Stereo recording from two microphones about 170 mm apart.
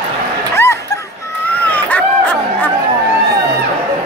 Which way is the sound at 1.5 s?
10° left (ahead or behind).